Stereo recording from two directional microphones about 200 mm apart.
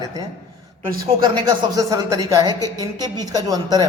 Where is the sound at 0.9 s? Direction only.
20° right (ahead or behind).